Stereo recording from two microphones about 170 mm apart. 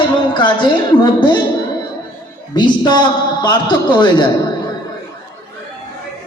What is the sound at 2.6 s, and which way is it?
A man's voice, 25° left (ahead or behind).